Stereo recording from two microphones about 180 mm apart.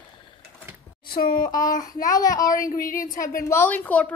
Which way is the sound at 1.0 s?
55° left (ahead or behind).